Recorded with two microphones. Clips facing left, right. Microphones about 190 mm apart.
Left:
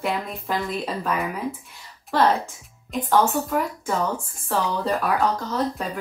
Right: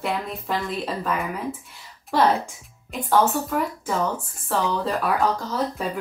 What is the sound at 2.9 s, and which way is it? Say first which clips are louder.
Speech: even; 5° right (ahead or behind).